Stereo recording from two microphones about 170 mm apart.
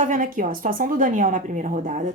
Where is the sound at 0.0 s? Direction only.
50° right (ahead or behind).